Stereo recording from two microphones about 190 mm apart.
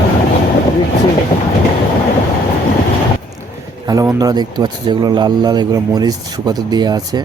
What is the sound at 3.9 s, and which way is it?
A man's voice, 20° right (ahead or behind).